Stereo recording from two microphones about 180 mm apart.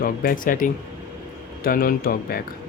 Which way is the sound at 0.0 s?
55° left (ahead or behind).